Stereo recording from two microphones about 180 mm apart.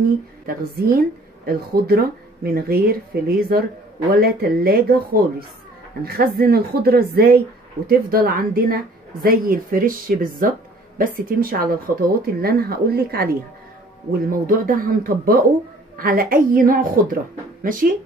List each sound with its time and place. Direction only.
0.5 s a woman's voice: 55° right (ahead or behind)
14.4 s a woman's voice: 50° right (ahead or behind)